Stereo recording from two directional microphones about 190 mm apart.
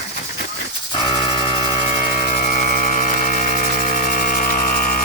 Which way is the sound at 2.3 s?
40° left (ahead or behind).